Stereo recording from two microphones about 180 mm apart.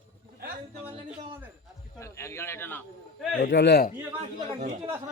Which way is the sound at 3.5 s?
70° left (ahead or behind).